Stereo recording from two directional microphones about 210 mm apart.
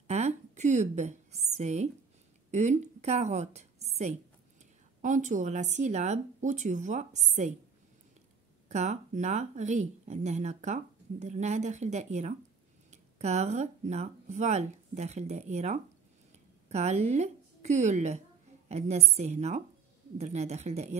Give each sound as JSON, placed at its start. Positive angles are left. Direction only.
{"t": 0.0, "sound": "a woman's voice", "side_deg": -30}
{"t": 8.6, "sound": "a woman's voice", "side_deg": -35}